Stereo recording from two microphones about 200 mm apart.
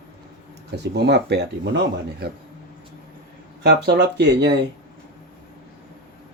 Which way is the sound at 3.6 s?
55° right (ahead or behind).